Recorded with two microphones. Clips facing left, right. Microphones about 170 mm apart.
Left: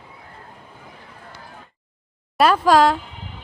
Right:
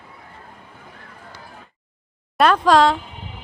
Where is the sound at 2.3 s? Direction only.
5° left (ahead or behind).